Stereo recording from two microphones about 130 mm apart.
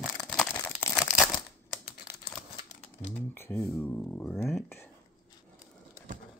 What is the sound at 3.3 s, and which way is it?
Speech, 20° left (ahead or behind).